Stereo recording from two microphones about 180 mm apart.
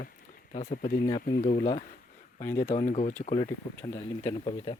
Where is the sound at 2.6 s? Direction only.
40° left (ahead or behind).